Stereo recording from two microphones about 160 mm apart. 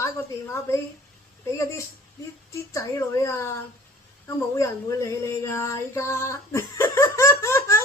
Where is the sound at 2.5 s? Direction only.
20° left (ahead or behind).